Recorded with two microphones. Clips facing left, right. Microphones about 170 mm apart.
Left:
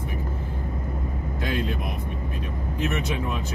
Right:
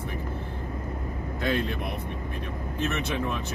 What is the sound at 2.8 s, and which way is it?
Speech, 15° left (ahead or behind).